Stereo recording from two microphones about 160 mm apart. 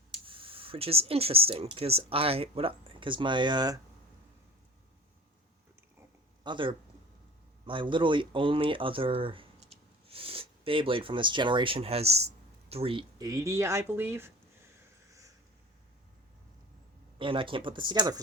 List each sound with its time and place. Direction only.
0.1 s speech: 35° right (ahead or behind)
6.4 s speech: 30° right (ahead or behind); by 14.3 s 15° right (ahead or behind)
17.2 s speech: 30° right (ahead or behind)